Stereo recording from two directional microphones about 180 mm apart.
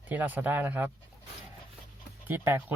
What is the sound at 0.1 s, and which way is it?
Speech, 10° right (ahead or behind).